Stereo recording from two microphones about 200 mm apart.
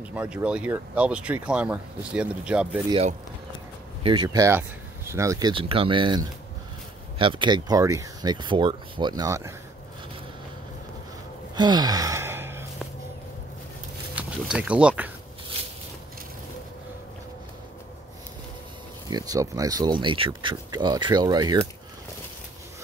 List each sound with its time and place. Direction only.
0.1 s speech: 5° right (ahead or behind)
2.9 s speech: 30° right (ahead or behind)
11.5 s sigh: 20° right (ahead or behind)
14.1 s speech: 5° right (ahead or behind)
19.0 s speech: 20° right (ahead or behind)